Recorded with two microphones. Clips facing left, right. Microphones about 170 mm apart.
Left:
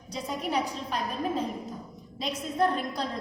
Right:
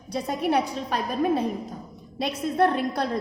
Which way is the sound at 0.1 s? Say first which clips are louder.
Right 6 dB; 65° right (ahead or behind).